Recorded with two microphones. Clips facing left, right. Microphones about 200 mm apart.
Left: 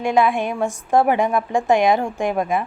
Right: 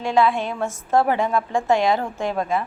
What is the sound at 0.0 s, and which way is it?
A woman's voice, 15° left (ahead or behind).